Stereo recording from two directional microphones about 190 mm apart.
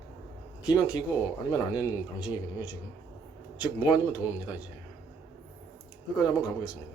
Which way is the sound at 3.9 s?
15° left (ahead or behind).